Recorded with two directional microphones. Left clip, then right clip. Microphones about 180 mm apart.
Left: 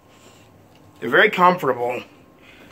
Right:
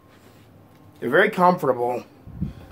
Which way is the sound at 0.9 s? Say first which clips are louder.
Left 3 dB; 5° right (ahead or behind).